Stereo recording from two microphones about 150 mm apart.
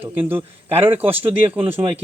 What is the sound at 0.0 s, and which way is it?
A man's voice, 10° right (ahead or behind).